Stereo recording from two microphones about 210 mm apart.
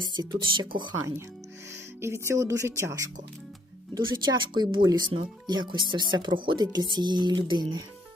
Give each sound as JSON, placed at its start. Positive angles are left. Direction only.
{"t": 0.1, "sound": "speech", "side_deg": -20}